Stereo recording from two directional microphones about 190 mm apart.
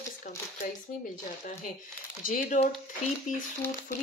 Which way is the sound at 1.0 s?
40° left (ahead or behind).